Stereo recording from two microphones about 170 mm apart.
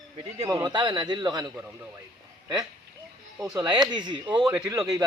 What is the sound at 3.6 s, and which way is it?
Speech, 25° right (ahead or behind).